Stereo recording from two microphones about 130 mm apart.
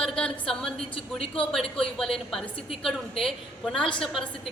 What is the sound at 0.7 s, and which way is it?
Speech, 45° left (ahead or behind).